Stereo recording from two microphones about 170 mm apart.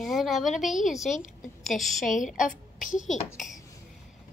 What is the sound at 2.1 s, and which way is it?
Speech, 50° left (ahead or behind).